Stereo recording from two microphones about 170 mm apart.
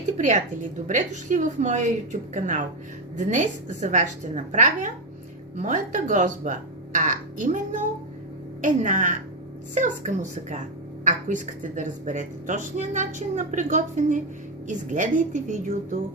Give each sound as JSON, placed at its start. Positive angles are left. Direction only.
{"t": 0.2, "sound": "speech", "side_deg": -45}